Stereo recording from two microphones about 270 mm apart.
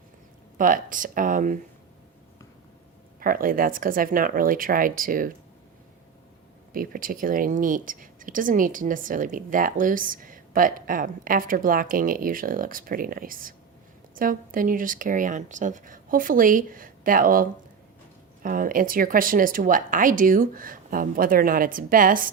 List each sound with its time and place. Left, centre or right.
0.6 s speech: right
3.2 s speech: right
6.7 s speech: right
18.4 s speech: right